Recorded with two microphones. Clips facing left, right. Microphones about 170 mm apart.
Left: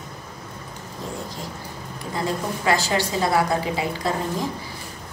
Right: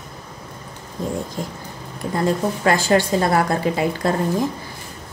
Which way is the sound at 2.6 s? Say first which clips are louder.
Right 5 dB; 50° right (ahead or behind).